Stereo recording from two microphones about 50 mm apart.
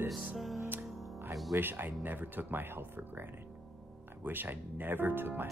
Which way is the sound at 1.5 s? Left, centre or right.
Right.